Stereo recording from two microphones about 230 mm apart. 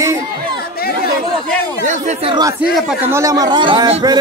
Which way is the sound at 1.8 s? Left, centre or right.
Right.